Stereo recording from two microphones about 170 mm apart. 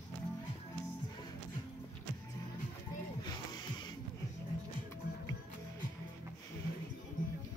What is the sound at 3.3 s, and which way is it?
Music, 25° left (ahead or behind).